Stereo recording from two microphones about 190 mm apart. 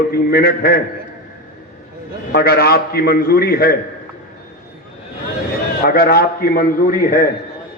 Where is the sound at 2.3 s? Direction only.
55° left (ahead or behind).